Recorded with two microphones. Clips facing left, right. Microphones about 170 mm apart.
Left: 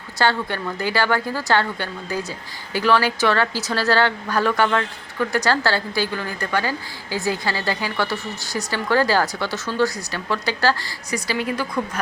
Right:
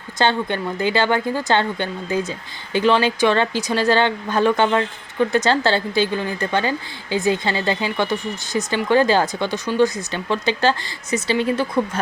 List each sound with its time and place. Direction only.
0.2 s speech: 20° right (ahead or behind)